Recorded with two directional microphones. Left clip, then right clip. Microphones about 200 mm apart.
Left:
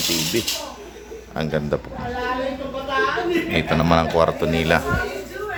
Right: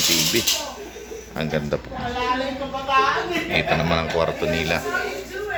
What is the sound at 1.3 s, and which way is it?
Speech, 10° left (ahead or behind).